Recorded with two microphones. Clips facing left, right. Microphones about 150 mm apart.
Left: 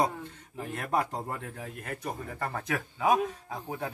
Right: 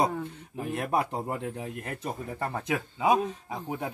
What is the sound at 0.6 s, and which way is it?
Speech, 15° right (ahead or behind).